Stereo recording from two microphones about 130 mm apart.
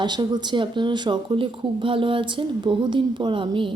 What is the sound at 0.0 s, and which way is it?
Speech, 35° right (ahead or behind).